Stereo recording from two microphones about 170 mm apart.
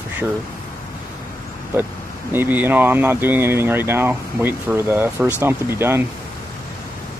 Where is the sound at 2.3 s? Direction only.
10° right (ahead or behind).